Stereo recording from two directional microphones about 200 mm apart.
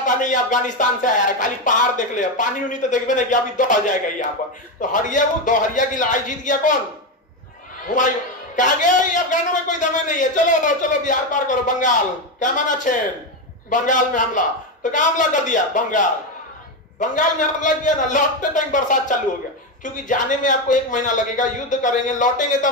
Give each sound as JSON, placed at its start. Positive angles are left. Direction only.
{"t": 0.0, "sound": "a man's voice", "side_deg": 40}
{"t": 7.8, "sound": "a man's voice", "side_deg": 40}
{"t": 17.1, "sound": "a man's voice", "side_deg": 40}